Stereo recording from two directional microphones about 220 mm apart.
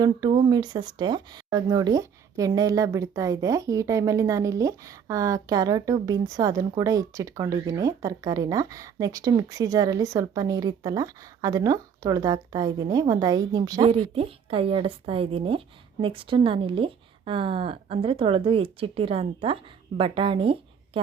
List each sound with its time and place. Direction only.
0.0 s a woman's voice: 20° right (ahead or behind)